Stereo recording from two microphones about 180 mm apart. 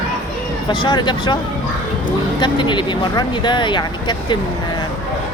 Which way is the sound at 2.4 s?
25° left (ahead or behind).